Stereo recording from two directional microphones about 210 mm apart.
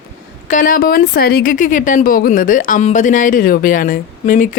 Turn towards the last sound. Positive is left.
turn(degrees=40)  # may be behind; listen again after turning